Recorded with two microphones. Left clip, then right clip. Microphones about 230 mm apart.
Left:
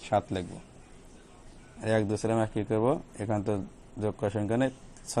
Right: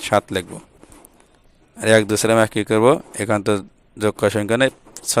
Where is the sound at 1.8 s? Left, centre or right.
Right.